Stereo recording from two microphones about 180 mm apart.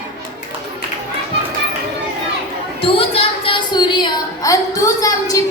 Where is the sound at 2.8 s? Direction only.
30° left (ahead or behind).